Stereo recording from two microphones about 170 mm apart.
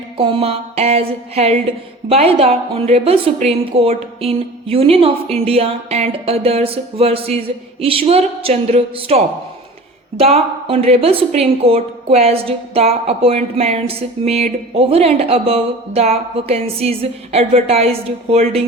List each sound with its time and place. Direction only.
0.2 s a woman's voice: 35° right (ahead or behind)